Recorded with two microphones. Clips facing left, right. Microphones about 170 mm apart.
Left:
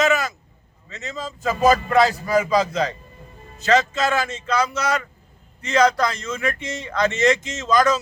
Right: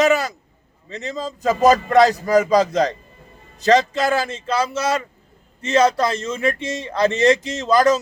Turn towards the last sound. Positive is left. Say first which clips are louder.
# right 3 dB
turn(degrees=-35)  # may be behind; listen again after turning